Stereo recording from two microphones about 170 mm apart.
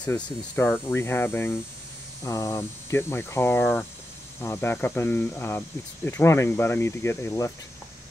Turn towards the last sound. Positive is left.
turn(degrees=15)  # may be behind; listen again after turning